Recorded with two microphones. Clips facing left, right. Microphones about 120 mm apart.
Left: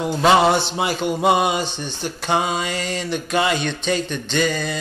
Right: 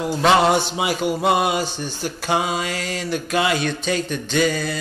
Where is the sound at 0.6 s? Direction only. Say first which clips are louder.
Even; 10° right (ahead or behind).